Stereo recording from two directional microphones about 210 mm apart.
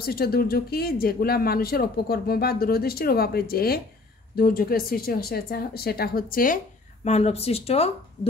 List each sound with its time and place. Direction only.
0.0 s speech: 45° left (ahead or behind)
7.1 s speech: 30° left (ahead or behind)